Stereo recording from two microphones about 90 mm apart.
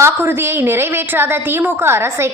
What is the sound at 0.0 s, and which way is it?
A woman's voice, 25° right (ahead or behind).